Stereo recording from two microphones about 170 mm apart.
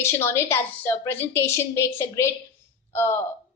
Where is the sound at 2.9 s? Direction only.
15° left (ahead or behind).